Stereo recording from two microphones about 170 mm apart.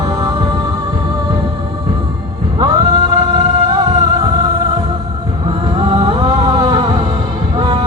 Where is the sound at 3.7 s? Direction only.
30° right (ahead or behind).